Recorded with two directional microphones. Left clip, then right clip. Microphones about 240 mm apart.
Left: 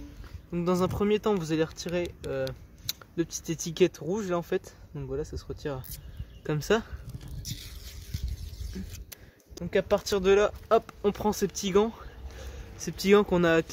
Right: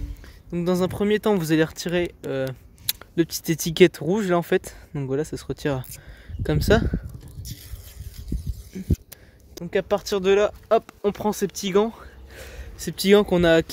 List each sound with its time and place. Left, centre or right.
0.5 s speech: centre; by 5.9 s right
6.4 s speech: right
8.1 s a sound: centre
9.6 s speech: right